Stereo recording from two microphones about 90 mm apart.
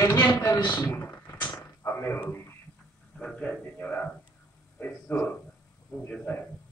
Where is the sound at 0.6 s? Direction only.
50° left (ahead or behind).